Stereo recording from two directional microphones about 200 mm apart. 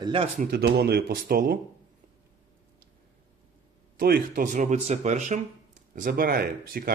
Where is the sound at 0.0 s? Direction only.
30° right (ahead or behind).